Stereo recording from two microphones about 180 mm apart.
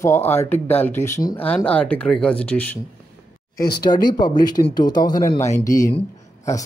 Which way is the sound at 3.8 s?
25° left (ahead or behind).